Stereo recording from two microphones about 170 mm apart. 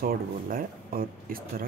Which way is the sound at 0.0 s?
60° right (ahead or behind).